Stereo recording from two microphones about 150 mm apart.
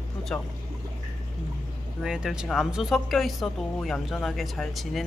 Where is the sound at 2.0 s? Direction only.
5° right (ahead or behind).